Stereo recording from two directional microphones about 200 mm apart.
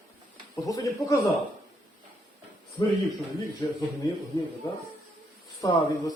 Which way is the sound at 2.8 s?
20° left (ahead or behind).